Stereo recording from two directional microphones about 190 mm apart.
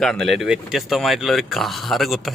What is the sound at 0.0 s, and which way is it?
Speech, centre (ahead or behind).